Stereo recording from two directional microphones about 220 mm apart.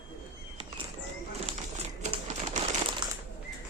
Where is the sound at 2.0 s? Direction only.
35° right (ahead or behind).